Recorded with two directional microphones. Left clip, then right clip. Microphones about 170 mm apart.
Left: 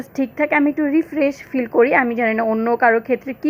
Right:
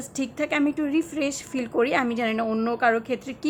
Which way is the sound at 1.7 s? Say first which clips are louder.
Left 8 dB; 15° left (ahead or behind).